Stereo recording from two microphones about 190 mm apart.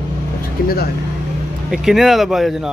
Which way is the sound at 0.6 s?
50° left (ahead or behind).